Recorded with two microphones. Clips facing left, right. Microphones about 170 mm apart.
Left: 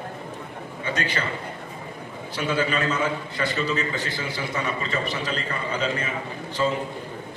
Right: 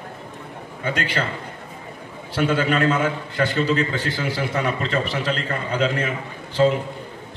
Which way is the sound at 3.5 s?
60° right (ahead or behind).